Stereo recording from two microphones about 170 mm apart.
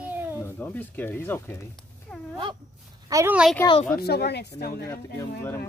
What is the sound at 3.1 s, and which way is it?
Speech, 20° right (ahead or behind).